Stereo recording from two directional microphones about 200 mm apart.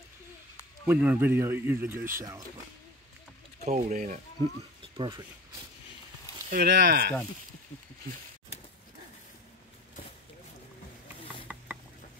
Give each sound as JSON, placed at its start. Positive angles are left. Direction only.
{"t": 0.8, "sound": "speech", "side_deg": -10}
{"t": 3.6, "sound": "speech", "side_deg": -35}
{"t": 4.9, "sound": "speech", "side_deg": -20}
{"t": 6.5, "sound": "speech", "side_deg": -55}
{"t": 11.4, "sound": "mechanisms", "side_deg": -5}